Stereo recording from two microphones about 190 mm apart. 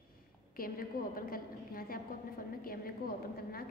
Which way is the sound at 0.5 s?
50° left (ahead or behind).